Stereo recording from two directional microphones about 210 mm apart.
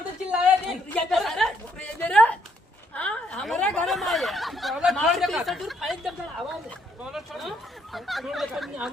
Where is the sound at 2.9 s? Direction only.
5° left (ahead or behind).